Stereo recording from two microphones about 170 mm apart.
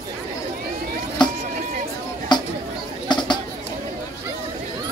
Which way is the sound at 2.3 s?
25° left (ahead or behind).